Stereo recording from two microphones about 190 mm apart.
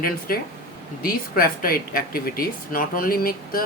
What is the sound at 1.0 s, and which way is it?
Speech, 50° left (ahead or behind).